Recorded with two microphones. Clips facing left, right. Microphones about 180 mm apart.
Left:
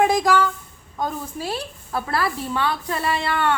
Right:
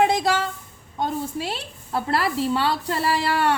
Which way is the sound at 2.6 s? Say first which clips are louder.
Right 1 dB; 35° right (ahead or behind).